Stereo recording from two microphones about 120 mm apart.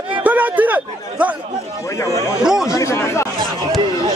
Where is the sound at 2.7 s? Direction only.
25° left (ahead or behind).